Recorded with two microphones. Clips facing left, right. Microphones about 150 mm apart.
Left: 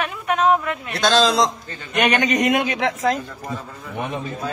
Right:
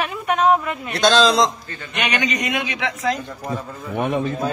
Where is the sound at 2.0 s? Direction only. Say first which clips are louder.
Left 5 dB; 45° left (ahead or behind).